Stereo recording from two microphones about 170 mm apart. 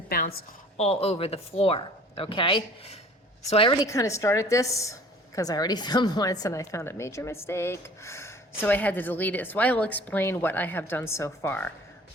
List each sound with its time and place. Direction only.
0.1 s a woman's voice: 60° left (ahead or behind)
0.8 s a woman's voice: 35° left (ahead or behind); by 11.7 s 10° left (ahead or behind)